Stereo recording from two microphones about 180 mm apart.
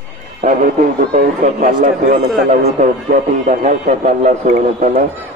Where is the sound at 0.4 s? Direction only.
40° right (ahead or behind).